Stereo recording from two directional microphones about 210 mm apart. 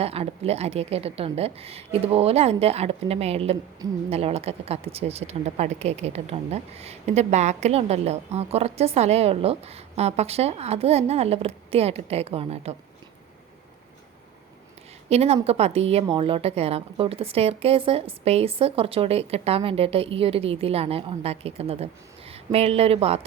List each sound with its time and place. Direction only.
0.0 s speech: 30° right (ahead or behind)
15.1 s a woman's voice: 30° right (ahead or behind)